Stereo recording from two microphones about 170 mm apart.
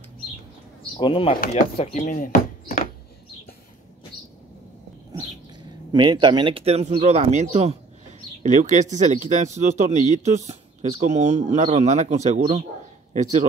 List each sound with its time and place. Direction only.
0.9 s speech: 30° left (ahead or behind); by 2.3 s 50° left (ahead or behind)
5.9 s speech: 25° right (ahead or behind); by 13.5 s 45° right (ahead or behind)